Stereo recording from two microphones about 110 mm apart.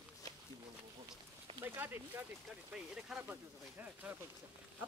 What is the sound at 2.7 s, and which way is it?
Speech, 5° right (ahead or behind).